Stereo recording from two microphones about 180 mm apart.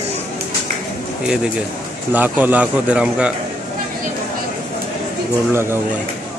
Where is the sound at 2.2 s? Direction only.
10° right (ahead or behind).